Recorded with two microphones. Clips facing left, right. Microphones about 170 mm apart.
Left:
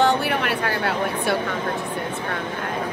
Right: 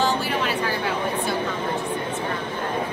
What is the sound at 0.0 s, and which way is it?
Speech, 60° left (ahead or behind).